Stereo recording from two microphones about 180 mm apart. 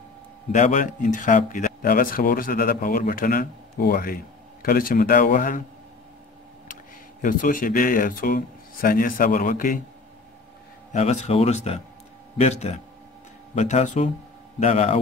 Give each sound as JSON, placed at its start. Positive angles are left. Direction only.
{"t": 0.5, "sound": "speech", "side_deg": 45}
{"t": 6.7, "sound": "speech", "side_deg": 50}
{"t": 10.9, "sound": "speech", "side_deg": 40}